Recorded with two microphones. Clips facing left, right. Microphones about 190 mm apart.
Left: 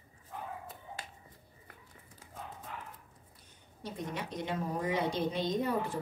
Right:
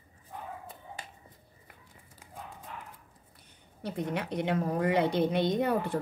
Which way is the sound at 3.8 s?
65° right (ahead or behind).